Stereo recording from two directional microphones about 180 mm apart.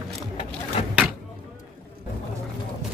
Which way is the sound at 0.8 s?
35° left (ahead or behind).